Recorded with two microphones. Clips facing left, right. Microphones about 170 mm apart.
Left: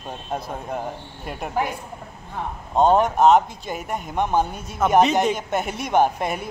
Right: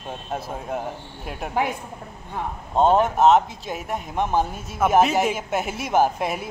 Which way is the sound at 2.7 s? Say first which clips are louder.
Left 1 dB; centre (ahead or behind).